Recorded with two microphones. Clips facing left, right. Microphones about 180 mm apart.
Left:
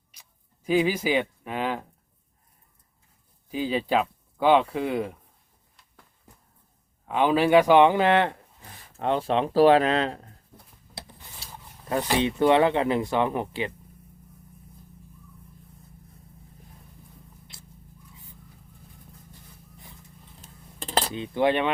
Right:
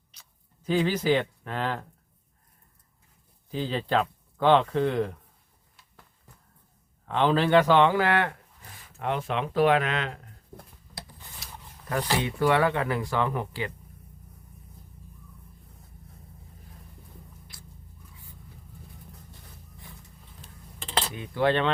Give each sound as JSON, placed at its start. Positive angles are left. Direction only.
{"t": 0.1, "sound": "a sound", "side_deg": 10}
{"t": 3.5, "sound": "speech", "side_deg": 10}
{"t": 7.0, "sound": "speech", "side_deg": 10}
{"t": 11.9, "sound": "speech", "side_deg": 20}
{"t": 17.5, "sound": "biting", "side_deg": 25}
{"t": 20.4, "sound": "dishes", "side_deg": 40}
{"t": 21.1, "sound": "speech", "side_deg": 20}